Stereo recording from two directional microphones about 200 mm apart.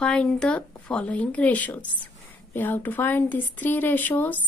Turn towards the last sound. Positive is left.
turn(degrees=10)  # may be behind; listen again after turning